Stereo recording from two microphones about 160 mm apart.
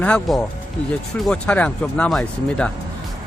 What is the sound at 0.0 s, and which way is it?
Speech, 5° left (ahead or behind).